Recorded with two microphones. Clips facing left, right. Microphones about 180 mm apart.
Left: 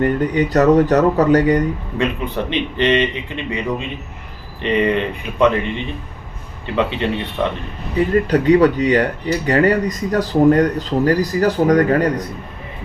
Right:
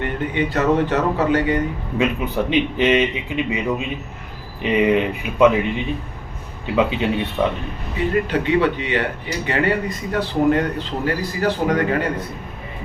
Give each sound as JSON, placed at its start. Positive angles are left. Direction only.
{"t": 0.0, "sound": "speech", "side_deg": 40}
{"t": 2.0, "sound": "speech", "side_deg": -5}
{"t": 8.3, "sound": "speech", "side_deg": 40}